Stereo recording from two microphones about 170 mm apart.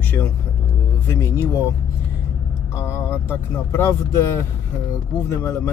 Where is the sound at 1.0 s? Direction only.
15° left (ahead or behind).